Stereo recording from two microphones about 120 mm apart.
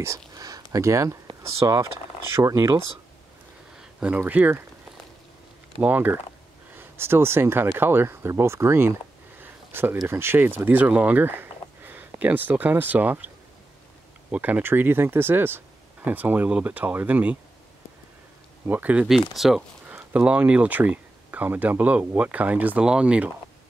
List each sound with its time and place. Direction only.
0.0 s speech: 25° right (ahead or behind)
4.0 s speech: 15° right (ahead or behind)
5.8 s speech: 15° right (ahead or behind)
9.4 s a sound: 15° right (ahead or behind)
10.0 s speech: 20° right (ahead or behind)
10.6 s a sound: 15° right (ahead or behind)
12.2 s speech: 15° right (ahead or behind)
14.3 s speech: 15° right (ahead or behind)
18.7 s speech: 15° right (ahead or behind)
19.9 s speech: 15° right (ahead or behind)